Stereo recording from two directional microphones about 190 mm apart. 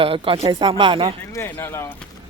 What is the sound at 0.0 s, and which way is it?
Speech, 30° right (ahead or behind).